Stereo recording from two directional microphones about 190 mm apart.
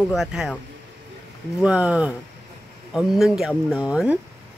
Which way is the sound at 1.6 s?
5° right (ahead or behind).